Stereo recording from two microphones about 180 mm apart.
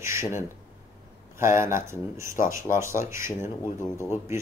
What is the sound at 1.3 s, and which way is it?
Speech, 15° right (ahead or behind).